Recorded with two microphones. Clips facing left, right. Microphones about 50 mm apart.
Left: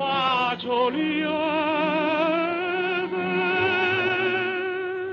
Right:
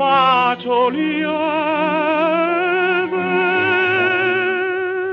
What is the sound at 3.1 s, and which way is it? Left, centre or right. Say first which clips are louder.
Music: right 7 dB; right.